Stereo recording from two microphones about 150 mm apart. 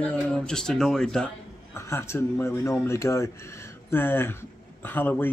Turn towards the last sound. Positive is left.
turn(degrees=15)  # may be behind; listen again after turning